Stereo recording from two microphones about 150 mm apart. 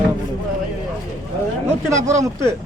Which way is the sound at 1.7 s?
20° right (ahead or behind).